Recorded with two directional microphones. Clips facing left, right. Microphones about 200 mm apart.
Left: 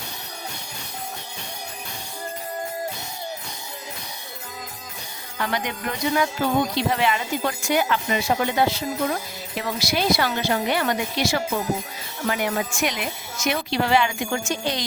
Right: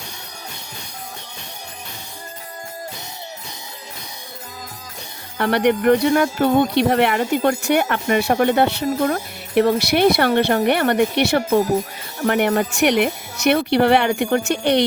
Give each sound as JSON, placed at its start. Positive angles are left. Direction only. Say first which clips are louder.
{"t": 5.4, "sound": "speech", "louder": "right 10 dB", "side_deg": -65}